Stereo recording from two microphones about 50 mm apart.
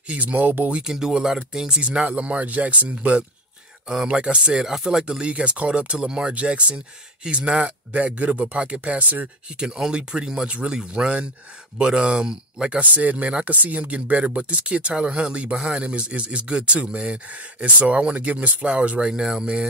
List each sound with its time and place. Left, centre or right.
0.1 s speech: right
0.7 s speech: centre
3.9 s speech: centre
5.2 s speech: right
9.6 s speech: centre
12.8 s speech: right